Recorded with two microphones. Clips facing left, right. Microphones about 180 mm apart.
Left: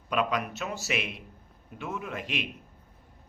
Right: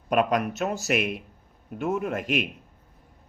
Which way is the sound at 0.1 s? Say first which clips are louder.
Right 6 dB; 50° right (ahead or behind).